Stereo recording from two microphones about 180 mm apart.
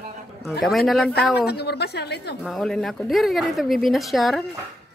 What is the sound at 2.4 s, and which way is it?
A woman's voice, centre (ahead or behind).